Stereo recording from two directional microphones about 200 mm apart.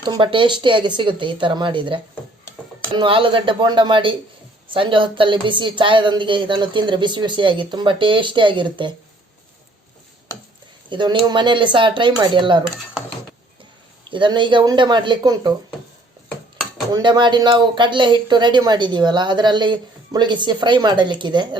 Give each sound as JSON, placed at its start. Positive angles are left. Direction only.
{"t": 0.0, "sound": "speech", "side_deg": -25}
{"t": 10.8, "sound": "speech", "side_deg": -25}
{"t": 14.0, "sound": "speech", "side_deg": -25}
{"t": 16.9, "sound": "speech", "side_deg": -25}